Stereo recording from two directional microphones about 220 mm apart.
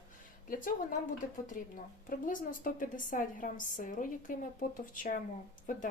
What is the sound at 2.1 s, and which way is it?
Speech, 40° left (ahead or behind).